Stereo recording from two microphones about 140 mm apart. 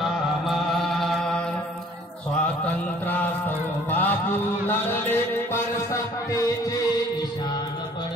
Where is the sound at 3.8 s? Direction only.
15° left (ahead or behind).